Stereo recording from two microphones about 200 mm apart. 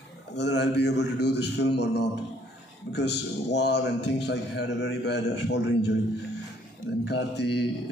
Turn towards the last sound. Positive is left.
turn(degrees=60)  # may be behind; listen again after turning